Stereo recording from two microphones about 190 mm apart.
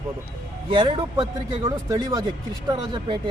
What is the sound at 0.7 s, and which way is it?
A man's voice, 25° right (ahead or behind).